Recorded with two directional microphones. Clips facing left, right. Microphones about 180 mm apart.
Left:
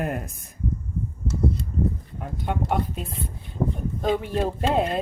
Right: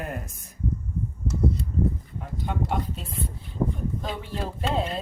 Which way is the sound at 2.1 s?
60° left (ahead or behind).